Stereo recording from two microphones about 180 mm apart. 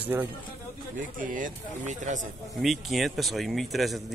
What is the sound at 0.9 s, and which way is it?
Speech, 50° right (ahead or behind).